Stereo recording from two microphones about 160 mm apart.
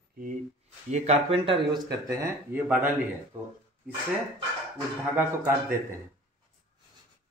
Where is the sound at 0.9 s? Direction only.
45° right (ahead or behind).